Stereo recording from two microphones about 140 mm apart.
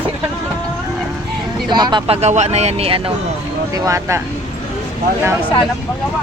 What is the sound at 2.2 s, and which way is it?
Speech, 50° right (ahead or behind).